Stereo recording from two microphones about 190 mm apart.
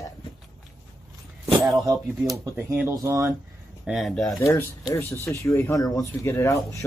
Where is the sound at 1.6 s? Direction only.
Centre (ahead or behind).